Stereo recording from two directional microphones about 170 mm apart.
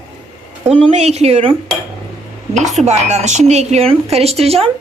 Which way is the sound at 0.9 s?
40° right (ahead or behind).